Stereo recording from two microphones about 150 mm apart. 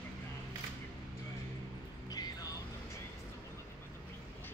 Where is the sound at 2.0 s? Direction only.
25° left (ahead or behind).